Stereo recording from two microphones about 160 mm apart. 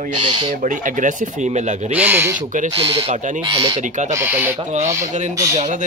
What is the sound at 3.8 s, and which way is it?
Speech, 50° right (ahead or behind).